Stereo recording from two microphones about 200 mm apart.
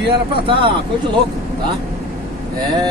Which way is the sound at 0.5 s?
25° right (ahead or behind).